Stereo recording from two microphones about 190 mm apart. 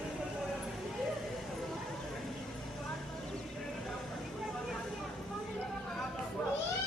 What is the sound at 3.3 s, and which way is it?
Music, centre (ahead or behind).